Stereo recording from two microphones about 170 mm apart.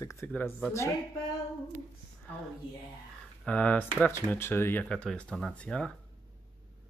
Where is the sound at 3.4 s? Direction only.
10° left (ahead or behind).